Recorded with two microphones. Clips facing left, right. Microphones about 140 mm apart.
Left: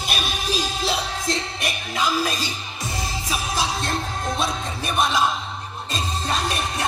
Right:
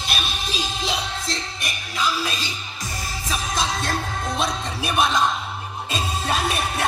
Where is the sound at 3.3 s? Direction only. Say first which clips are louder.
Right 1 dB; 10° left (ahead or behind).